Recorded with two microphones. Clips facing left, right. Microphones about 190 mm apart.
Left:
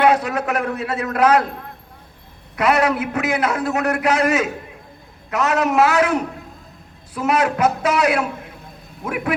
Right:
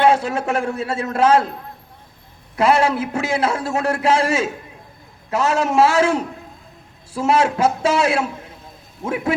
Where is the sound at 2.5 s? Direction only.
30° right (ahead or behind).